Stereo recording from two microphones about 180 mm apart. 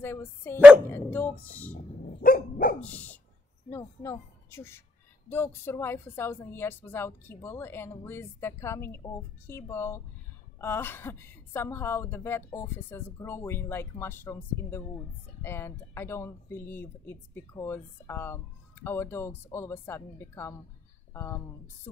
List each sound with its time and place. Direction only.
0.0 s speech: 10° left (ahead or behind)
1.7 s dog: 55° left (ahead or behind)
2.8 s speech: 10° left (ahead or behind)